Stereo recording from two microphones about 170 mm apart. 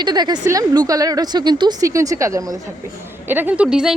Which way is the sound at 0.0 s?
25° right (ahead or behind).